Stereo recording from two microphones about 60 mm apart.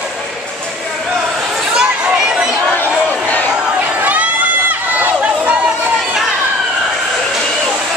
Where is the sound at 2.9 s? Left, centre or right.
Centre.